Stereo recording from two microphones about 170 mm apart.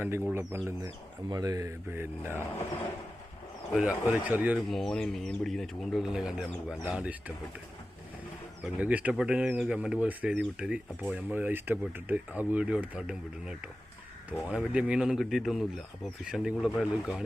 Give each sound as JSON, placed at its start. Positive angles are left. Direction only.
{"t": 0.3, "sound": "speech", "side_deg": -15}
{"t": 3.7, "sound": "speech", "side_deg": -5}
{"t": 8.6, "sound": "speech", "side_deg": -10}